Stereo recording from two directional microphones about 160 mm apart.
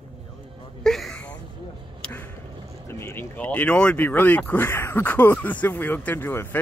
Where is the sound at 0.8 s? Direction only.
5° left (ahead or behind).